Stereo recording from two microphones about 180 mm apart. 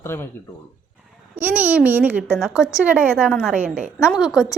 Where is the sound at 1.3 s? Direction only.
10° right (ahead or behind).